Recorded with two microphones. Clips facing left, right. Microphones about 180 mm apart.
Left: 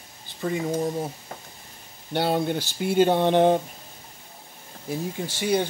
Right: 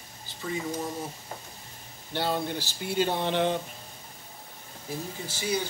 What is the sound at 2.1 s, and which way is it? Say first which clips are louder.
Speech: left 6 dB; 60° left (ahead or behind).